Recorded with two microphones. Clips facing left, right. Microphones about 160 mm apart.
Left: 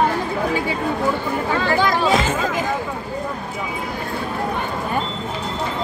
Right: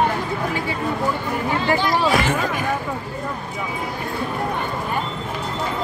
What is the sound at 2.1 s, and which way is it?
Speech, 20° left (ahead or behind).